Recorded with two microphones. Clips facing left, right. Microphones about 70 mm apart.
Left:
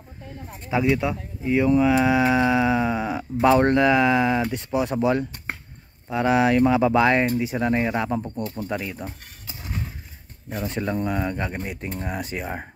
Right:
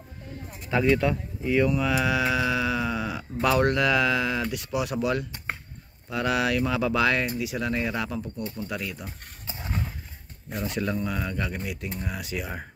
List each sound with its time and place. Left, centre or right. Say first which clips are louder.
0.7 s speech: left 1 dB; centre; by 8.7 s left
9.5 s a sound: right 1 dB; right
10.6 s speech: left 2 dB; left